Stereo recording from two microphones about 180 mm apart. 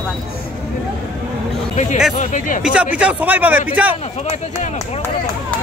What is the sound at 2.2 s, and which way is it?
Speech, 45° left (ahead or behind).